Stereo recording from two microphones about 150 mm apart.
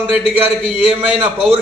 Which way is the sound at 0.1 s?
10° right (ahead or behind).